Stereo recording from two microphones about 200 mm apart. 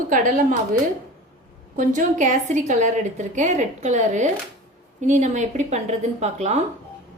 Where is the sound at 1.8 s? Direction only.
40° right (ahead or behind).